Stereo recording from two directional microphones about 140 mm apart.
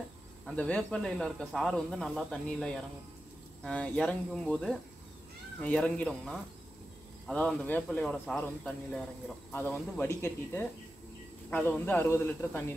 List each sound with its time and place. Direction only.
0.5 s a man's voice: 5° left (ahead or behind)